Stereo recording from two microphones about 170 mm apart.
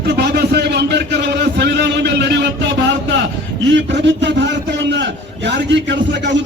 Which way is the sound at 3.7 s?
90° right.